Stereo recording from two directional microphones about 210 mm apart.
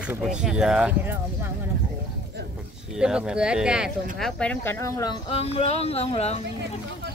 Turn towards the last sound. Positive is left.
turn(degrees=30)  # may be behind; listen again after turning